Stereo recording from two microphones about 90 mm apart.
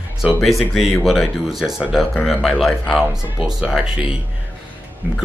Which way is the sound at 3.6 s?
10° right (ahead or behind).